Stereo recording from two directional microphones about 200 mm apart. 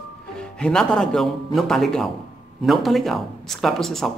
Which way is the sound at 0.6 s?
5° left (ahead or behind).